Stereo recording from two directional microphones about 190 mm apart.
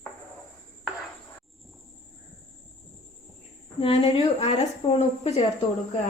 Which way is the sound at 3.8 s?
30° left (ahead or behind).